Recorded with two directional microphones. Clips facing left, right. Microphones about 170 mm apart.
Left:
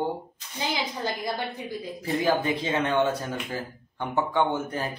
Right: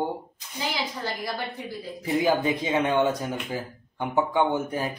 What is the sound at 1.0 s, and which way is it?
Speech, 20° left (ahead or behind).